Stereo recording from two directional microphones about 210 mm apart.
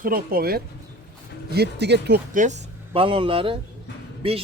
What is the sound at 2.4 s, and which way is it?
Speech, 30° right (ahead or behind).